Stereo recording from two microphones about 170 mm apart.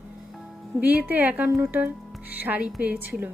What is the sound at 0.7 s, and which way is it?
Speech, 10° right (ahead or behind).